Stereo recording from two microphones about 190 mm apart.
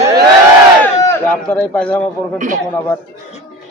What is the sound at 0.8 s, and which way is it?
A man's voice, 10° left (ahead or behind).